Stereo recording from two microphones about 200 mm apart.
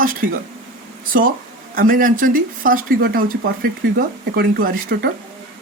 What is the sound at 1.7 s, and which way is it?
Speech, 45° right (ahead or behind).